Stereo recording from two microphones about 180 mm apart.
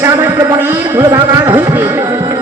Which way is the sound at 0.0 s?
10° right (ahead or behind).